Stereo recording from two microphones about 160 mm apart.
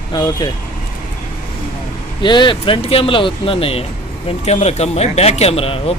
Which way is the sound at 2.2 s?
30° left (ahead or behind).